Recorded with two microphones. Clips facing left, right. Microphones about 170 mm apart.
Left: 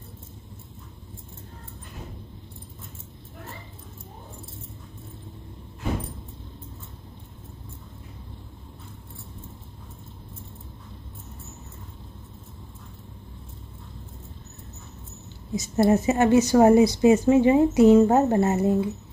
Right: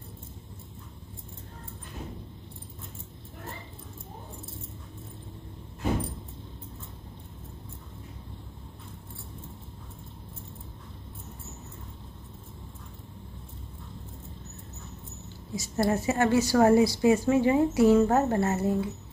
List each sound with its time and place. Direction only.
15.5 s a woman's voice: 20° left (ahead or behind)